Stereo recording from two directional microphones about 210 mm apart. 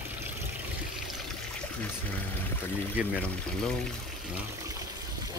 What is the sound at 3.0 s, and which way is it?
Speech, 5° right (ahead or behind).